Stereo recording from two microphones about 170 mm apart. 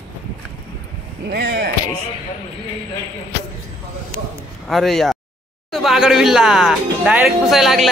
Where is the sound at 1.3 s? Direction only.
75° right (ahead or behind).